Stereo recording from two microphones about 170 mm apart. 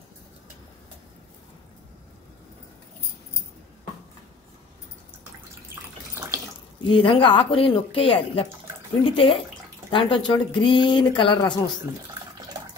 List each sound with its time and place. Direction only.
6.1 s water: 15° right (ahead or behind)
6.8 s speech: 30° left (ahead or behind)